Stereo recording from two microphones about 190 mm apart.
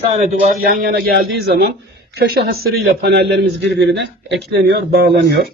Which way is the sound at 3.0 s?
60° right (ahead or behind).